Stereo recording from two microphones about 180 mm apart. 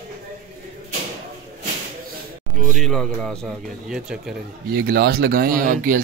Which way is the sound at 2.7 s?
Centre (ahead or behind).